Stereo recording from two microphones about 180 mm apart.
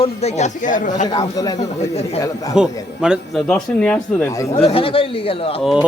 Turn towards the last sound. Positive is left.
turn(degrees=0)  # may be behind; listen again after turning